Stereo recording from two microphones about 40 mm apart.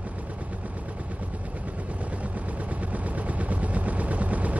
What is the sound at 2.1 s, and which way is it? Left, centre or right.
Vehicle, right.